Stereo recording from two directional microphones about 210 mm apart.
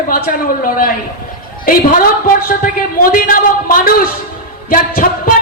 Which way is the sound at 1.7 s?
45° left (ahead or behind).